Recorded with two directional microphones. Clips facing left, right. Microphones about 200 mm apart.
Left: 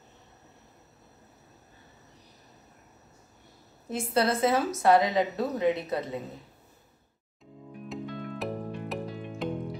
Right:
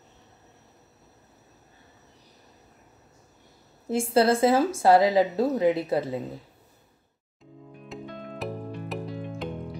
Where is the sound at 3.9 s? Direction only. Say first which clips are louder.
Right 5 dB; 30° right (ahead or behind).